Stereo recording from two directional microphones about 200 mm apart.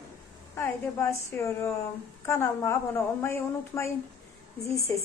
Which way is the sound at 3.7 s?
15° left (ahead or behind).